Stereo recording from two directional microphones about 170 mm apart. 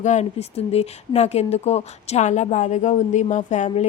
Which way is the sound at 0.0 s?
45° left (ahead or behind).